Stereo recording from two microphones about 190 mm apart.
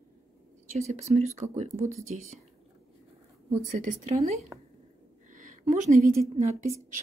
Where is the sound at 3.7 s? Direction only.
35° right (ahead or behind).